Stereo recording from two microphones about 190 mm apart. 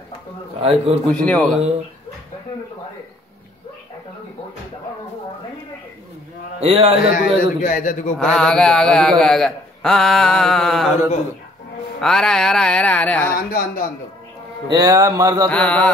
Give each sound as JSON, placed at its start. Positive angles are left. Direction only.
{"t": 0.6, "sound": "a man's voice", "side_deg": -30}
{"t": 1.1, "sound": "speech", "side_deg": 5}
{"t": 6.6, "sound": "a man's voice", "side_deg": -35}
{"t": 7.2, "sound": "a man's voice", "side_deg": 45}
{"t": 8.2, "sound": "speech", "side_deg": 5}
{"t": 12.0, "sound": "speech", "side_deg": 5}
{"t": 13.5, "sound": "a man's voice", "side_deg": 50}
{"t": 14.7, "sound": "speech", "side_deg": -20}
{"t": 15.5, "sound": "mantra", "side_deg": 5}